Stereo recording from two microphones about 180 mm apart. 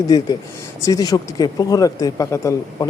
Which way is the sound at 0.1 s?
20° left (ahead or behind).